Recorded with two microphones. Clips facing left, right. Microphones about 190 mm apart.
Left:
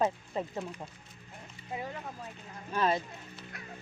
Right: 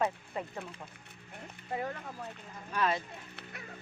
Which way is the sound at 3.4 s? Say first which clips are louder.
Left 1 dB; 65° right (ahead or behind).